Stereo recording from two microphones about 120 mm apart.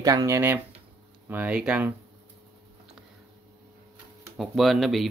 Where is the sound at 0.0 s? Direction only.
30° right (ahead or behind).